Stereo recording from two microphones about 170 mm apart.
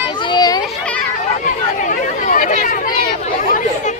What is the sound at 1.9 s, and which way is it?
Chatter, 50° left (ahead or behind).